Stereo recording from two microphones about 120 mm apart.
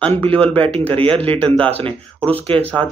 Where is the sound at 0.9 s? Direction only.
50° right (ahead or behind).